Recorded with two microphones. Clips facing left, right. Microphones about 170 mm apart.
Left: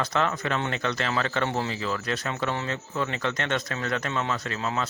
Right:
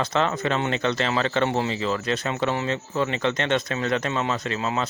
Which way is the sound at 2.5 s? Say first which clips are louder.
Right 4 dB; 15° right (ahead or behind).